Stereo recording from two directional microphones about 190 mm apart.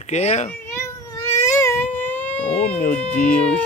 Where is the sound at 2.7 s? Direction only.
45° left (ahead or behind).